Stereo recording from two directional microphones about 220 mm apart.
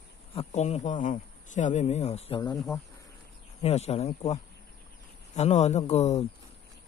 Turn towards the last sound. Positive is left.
turn(degrees=30)  # may be behind; listen again after turning